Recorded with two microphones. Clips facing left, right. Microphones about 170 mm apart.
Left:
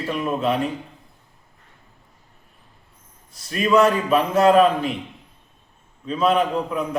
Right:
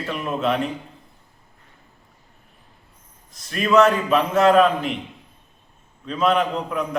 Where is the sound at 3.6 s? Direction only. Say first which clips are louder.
Right 1 dB; 10° left (ahead or behind).